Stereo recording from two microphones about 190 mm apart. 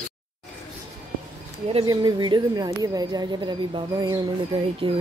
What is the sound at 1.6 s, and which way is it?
Speech, 25° right (ahead or behind).